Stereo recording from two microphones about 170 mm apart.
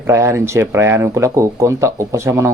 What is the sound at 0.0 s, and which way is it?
Speech, 15° right (ahead or behind).